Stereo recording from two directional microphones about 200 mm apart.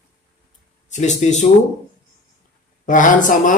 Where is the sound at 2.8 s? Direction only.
40° left (ahead or behind).